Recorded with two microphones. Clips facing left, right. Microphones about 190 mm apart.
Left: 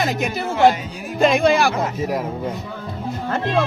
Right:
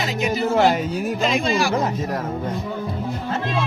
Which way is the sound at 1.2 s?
60° left (ahead or behind).